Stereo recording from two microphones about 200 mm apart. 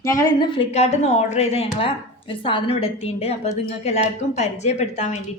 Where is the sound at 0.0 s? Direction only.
15° left (ahead or behind).